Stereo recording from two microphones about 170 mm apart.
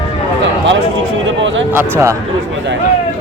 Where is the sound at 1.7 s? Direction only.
15° right (ahead or behind).